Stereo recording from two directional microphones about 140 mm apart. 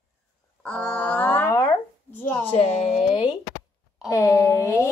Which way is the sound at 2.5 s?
45° left (ahead or behind).